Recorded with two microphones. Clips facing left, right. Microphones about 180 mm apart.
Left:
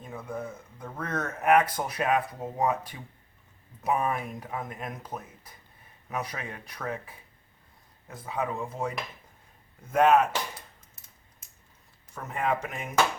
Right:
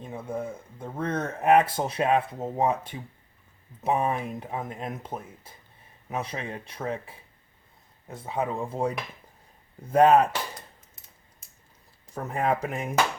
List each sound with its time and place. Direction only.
0.0 s speech: 25° right (ahead or behind)
12.1 s speech: 35° right (ahead or behind)